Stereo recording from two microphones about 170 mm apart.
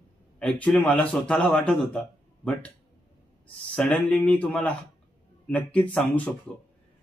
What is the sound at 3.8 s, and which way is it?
Speech, 5° left (ahead or behind).